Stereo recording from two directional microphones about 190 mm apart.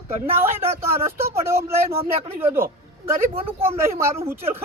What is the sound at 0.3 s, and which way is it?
Speech, 15° right (ahead or behind).